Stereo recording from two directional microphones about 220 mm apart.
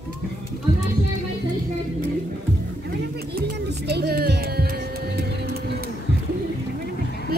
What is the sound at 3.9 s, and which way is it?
Music, 45° right (ahead or behind).